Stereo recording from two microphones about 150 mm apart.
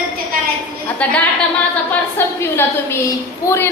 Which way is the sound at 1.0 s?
10° left (ahead or behind).